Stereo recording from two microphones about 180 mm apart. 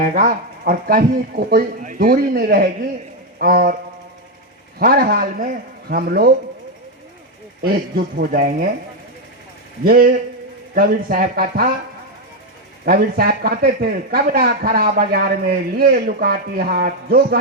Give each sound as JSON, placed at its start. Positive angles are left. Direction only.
{"t": 0.0, "sound": "speech", "side_deg": -50}
{"t": 4.8, "sound": "speech", "side_deg": -60}
{"t": 7.9, "sound": "speech", "side_deg": -55}
{"t": 9.8, "sound": "speech", "side_deg": -55}
{"t": 12.8, "sound": "speech", "side_deg": -55}